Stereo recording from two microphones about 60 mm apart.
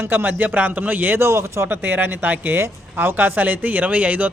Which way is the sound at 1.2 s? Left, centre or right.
Right.